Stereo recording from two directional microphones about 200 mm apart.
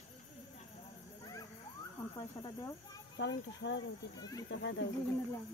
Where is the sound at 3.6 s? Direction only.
70° left (ahead or behind).